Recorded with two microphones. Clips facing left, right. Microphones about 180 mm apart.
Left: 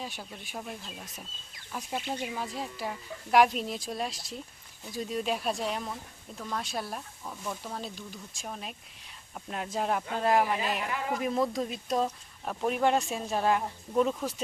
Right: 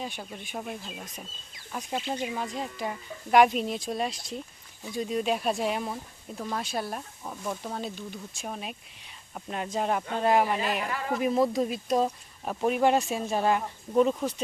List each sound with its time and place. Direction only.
0.0 s speech: centre (ahead or behind)
7.3 s speech: 15° right (ahead or behind)
7.7 s speech: centre (ahead or behind)